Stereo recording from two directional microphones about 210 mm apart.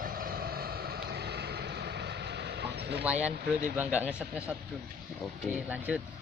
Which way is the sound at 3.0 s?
5° right (ahead or behind).